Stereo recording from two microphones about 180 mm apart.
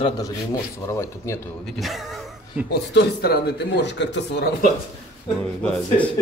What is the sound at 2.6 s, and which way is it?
Speech, 65° left (ahead or behind).